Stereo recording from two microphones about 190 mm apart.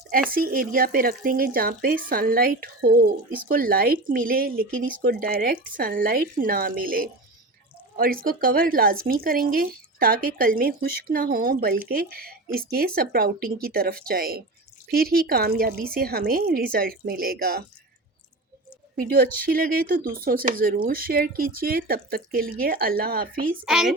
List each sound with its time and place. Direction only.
0.3 s speech: 50° right (ahead or behind)
18.9 s speech: 50° right (ahead or behind)
23.6 s a woman's voice: 5° right (ahead or behind)